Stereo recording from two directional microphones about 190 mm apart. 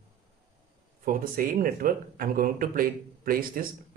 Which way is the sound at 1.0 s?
45° right (ahead or behind).